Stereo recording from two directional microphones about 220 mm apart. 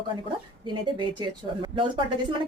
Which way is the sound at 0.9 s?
20° right (ahead or behind).